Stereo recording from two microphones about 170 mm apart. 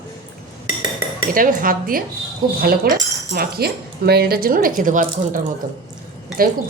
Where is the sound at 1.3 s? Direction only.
55° right (ahead or behind).